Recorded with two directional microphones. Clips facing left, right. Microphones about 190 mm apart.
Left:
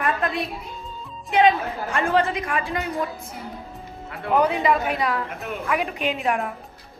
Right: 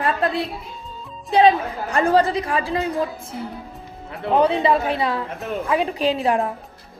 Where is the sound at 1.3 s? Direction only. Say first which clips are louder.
Right 3 dB; 35° right (ahead or behind).